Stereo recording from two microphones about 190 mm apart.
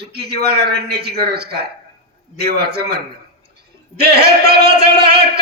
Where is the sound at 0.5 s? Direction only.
55° right (ahead or behind).